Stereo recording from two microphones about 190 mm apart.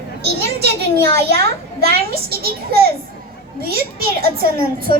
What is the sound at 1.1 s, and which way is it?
A child's voice, 55° right (ahead or behind).